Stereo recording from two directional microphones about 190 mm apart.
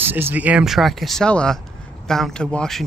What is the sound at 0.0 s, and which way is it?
A man's voice, 10° right (ahead or behind).